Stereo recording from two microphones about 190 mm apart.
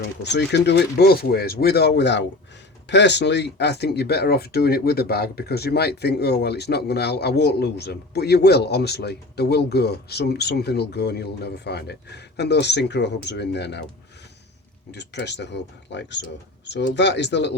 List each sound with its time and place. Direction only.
0.0 s speech: 65° left (ahead or behind)
14.9 s speech: 65° left (ahead or behind)